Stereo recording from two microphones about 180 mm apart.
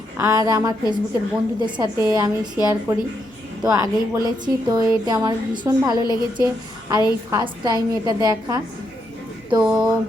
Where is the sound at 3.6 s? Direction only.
20° right (ahead or behind).